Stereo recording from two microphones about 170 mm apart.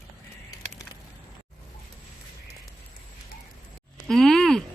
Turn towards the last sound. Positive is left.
turn(degrees=5)  # may be behind; listen again after turning